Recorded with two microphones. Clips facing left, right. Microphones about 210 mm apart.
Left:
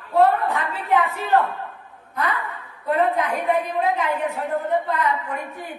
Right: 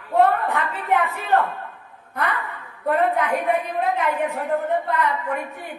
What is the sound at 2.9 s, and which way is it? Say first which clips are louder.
A woman's voice: right 1 dB; 60° right (ahead or behind).